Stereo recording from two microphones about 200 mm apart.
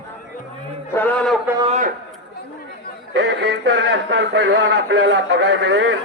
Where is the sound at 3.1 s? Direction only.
60° right (ahead or behind).